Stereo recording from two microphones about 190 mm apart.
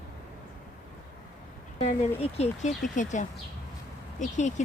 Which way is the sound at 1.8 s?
35° left (ahead or behind).